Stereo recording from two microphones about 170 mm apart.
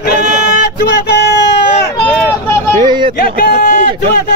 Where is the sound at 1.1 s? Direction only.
90° left.